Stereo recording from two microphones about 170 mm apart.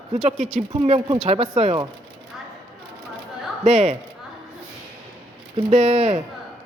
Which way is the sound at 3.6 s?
40° right (ahead or behind).